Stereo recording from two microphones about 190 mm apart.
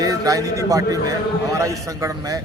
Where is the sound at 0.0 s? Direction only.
20° right (ahead or behind).